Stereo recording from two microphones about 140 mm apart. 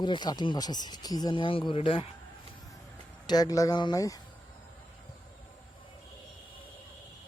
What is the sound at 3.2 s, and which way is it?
Speech, 30° left (ahead or behind).